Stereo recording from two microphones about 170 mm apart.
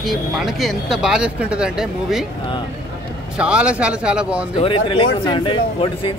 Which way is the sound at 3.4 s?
5° right (ahead or behind).